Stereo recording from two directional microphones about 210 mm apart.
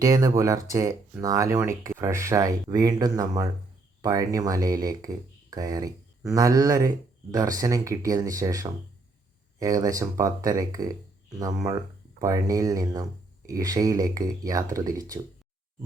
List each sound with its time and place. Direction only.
0.0 s speech: 15° right (ahead or behind)